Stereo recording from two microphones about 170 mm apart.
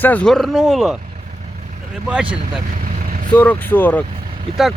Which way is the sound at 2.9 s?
55° right (ahead or behind).